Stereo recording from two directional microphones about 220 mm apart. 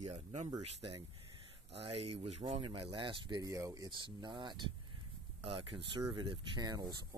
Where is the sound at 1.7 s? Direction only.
25° right (ahead or behind).